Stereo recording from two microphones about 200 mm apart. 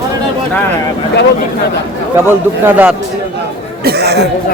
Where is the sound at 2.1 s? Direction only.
10° right (ahead or behind).